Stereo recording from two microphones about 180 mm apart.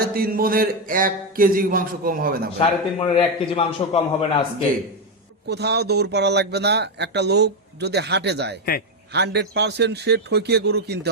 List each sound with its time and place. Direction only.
0.0 s speech: 55° right (ahead or behind)
2.6 s a man's voice: 30° left (ahead or behind)
5.5 s speech: 65° right (ahead or behind)